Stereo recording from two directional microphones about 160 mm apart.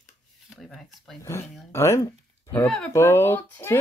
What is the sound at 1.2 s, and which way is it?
Speech, 15° left (ahead or behind).